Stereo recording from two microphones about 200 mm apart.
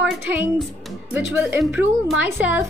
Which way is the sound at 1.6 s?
Centre (ahead or behind).